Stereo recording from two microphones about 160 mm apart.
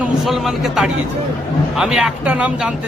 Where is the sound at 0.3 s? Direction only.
Centre (ahead or behind).